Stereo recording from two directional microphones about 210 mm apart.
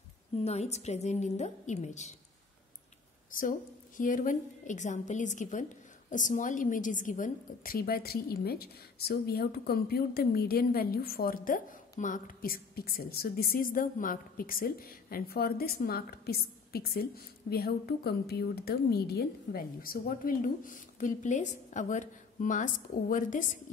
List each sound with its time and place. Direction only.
0.4 s a woman's voice: 30° left (ahead or behind)
3.3 s a woman's voice: 40° left (ahead or behind)